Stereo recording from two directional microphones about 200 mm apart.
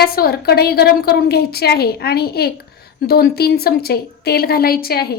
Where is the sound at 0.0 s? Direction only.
50° left (ahead or behind).